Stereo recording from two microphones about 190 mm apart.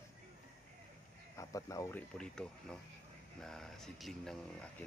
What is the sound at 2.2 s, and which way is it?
Speech, 5° left (ahead or behind).